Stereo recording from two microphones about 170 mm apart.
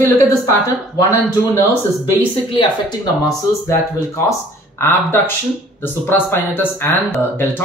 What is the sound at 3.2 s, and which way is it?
Speech, 15° left (ahead or behind).